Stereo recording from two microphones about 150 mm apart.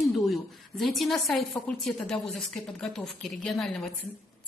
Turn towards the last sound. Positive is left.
turn(degrees=0)  # may be behind; listen again after turning